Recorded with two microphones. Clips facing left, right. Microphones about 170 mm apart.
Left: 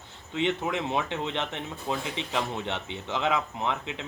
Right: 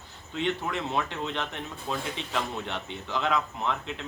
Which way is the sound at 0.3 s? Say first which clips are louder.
Left 2 dB; 20° left (ahead or behind).